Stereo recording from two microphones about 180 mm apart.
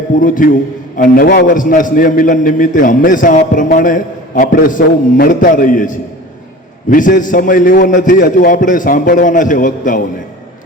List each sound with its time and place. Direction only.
0.2 s a man's voice: 50° left (ahead or behind)